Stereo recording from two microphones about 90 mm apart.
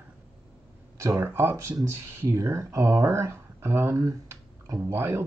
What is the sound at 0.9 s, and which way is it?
Speech, 35° right (ahead or behind).